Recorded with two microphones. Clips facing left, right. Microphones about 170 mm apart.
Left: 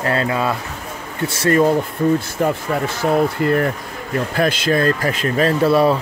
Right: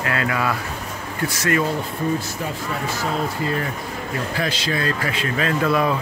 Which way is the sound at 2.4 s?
60° left (ahead or behind).